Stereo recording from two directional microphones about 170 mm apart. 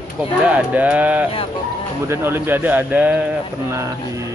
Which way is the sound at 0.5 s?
10° right (ahead or behind).